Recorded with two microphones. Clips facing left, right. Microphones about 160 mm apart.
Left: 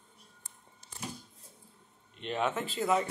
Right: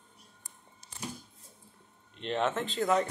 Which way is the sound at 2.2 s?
5° left (ahead or behind).